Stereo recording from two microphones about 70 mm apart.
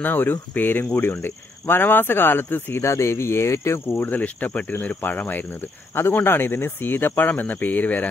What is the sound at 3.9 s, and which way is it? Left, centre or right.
Speech, left.